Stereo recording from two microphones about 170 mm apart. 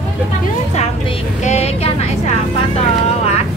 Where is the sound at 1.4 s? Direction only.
40° left (ahead or behind).